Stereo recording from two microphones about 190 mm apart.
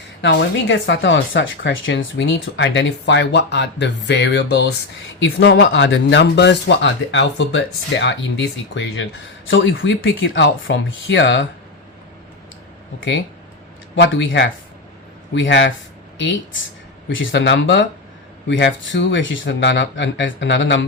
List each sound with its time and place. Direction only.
0.2 s speech: 75° left (ahead or behind)
13.0 s speech: 70° left (ahead or behind)